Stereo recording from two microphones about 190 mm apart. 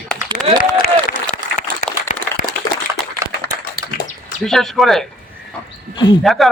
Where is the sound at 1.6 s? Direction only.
40° left (ahead or behind).